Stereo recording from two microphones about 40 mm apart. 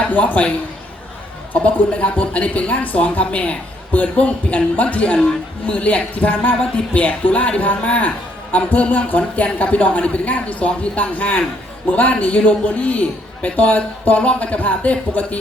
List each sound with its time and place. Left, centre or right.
0.1 s speech: left
1.5 s speech: left